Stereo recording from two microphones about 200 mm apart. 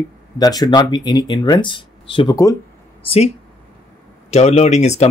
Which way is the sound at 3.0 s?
30° left (ahead or behind).